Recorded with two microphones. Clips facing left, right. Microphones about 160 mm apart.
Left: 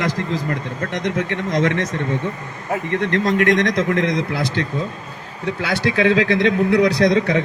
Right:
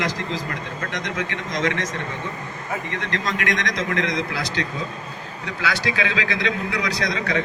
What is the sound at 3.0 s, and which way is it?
Speech, 55° left (ahead or behind).